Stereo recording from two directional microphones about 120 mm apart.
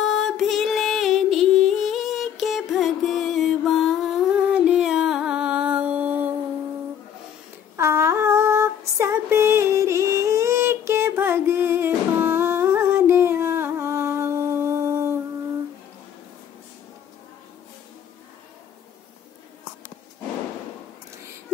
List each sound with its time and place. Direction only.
0.0 s music: 5° left (ahead or behind); by 6.3 s 15° right (ahead or behind)
7.7 s female singing: 20° right (ahead or behind)